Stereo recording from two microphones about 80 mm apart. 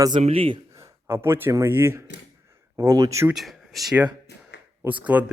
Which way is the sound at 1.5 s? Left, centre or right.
Right.